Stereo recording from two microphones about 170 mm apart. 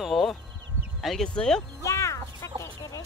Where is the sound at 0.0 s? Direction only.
Centre (ahead or behind).